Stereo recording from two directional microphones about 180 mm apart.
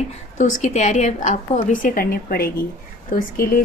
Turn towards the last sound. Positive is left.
turn(degrees=55)  # may be behind; listen again after turning